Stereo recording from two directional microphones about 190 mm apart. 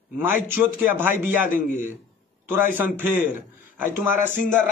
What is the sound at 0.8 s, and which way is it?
Speech, 10° right (ahead or behind).